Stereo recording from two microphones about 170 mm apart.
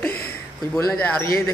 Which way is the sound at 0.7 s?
15° left (ahead or behind).